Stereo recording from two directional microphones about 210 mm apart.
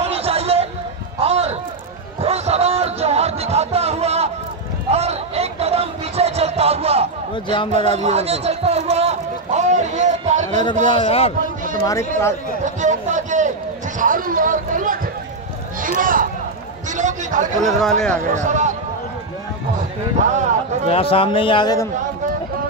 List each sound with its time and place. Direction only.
0.0 s a sound: 30° right (ahead or behind)
10.9 s a man's voice: 30° left (ahead or behind)
11.8 s speech: 15° left (ahead or behind)
12.8 s a sound: 35° right (ahead or behind)
13.9 s a man's voice: 40° right (ahead or behind)
20.2 s a man's voice: 35° right (ahead or behind)
20.9 s a man's voice: 25° left (ahead or behind)